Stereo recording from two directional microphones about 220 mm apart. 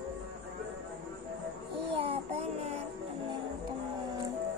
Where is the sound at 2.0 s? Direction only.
25° right (ahead or behind).